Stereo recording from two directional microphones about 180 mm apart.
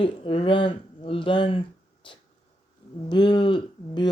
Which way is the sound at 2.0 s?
25° left (ahead or behind).